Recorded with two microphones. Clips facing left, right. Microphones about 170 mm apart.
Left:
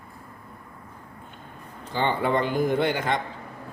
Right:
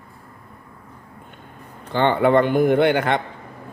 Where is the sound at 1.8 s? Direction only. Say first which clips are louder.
Right 7 dB; 65° right (ahead or behind).